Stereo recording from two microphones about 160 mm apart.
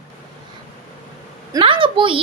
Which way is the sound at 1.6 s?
35° right (ahead or behind).